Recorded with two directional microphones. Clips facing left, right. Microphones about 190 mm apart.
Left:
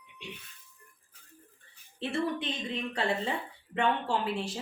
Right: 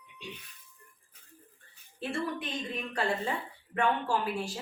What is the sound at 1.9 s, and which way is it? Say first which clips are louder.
A woman's voice: left 3 dB; 25° left (ahead or behind).